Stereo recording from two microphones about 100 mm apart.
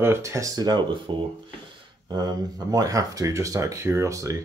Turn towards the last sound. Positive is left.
turn(degrees=-30)  # may be behind; listen again after turning